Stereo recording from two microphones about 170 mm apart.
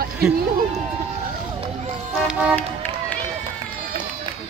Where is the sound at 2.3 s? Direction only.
5° right (ahead or behind).